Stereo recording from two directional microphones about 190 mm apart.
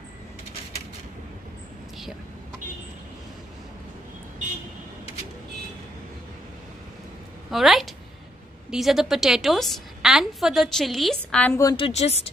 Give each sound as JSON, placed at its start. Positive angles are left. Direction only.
{"t": 7.5, "sound": "a woman's voice", "side_deg": 0}
{"t": 11.6, "sound": "a woman's voice", "side_deg": 25}